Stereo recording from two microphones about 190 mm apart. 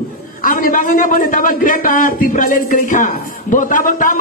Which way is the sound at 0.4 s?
45° left (ahead or behind).